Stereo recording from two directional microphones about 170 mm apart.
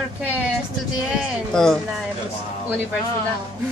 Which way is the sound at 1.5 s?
5° left (ahead or behind).